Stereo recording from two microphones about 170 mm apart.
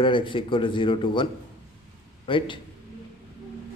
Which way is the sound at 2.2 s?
30° left (ahead or behind).